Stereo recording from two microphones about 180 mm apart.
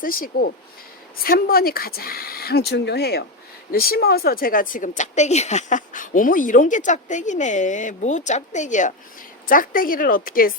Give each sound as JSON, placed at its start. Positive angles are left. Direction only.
{"t": 0.0, "sound": "speech", "side_deg": 50}